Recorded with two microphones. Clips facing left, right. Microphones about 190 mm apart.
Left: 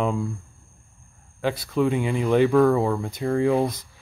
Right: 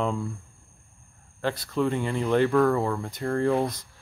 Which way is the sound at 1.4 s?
10° left (ahead or behind).